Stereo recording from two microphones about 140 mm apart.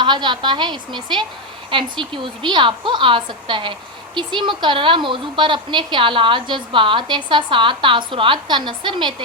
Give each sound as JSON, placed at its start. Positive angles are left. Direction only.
{"t": 0.0, "sound": "a woman's voice", "side_deg": -35}